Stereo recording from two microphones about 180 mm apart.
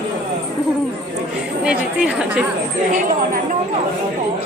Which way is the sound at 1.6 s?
5° right (ahead or behind).